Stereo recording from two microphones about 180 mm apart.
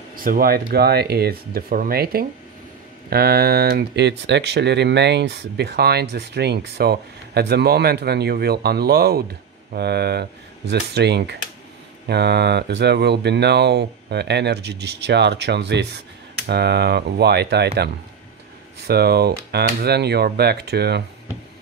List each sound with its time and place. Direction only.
0.1 s speech: 50° right (ahead or behind)